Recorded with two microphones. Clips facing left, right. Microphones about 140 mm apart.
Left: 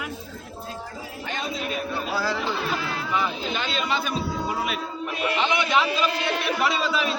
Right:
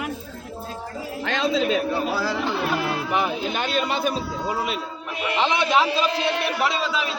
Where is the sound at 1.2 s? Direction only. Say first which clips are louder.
Right 9 dB; 90° right.